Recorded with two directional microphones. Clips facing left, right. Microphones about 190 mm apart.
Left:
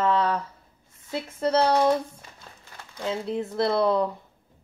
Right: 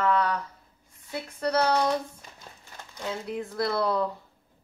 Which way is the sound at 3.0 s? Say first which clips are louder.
Left 4 dB; 25° left (ahead or behind).